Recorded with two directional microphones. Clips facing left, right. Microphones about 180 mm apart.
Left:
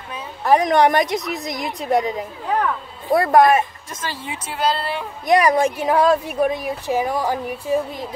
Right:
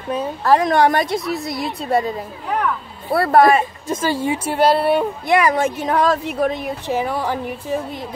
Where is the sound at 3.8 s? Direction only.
30° right (ahead or behind).